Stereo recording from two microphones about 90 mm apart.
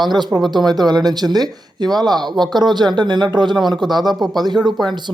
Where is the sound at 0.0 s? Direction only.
55° right (ahead or behind).